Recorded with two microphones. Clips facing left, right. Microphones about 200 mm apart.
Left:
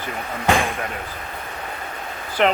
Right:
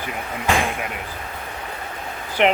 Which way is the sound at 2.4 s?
20° right (ahead or behind).